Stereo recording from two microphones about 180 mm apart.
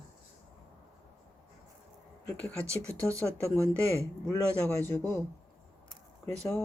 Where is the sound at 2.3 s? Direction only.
10° left (ahead or behind).